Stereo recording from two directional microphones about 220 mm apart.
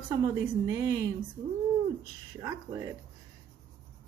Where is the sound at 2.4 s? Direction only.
15° right (ahead or behind).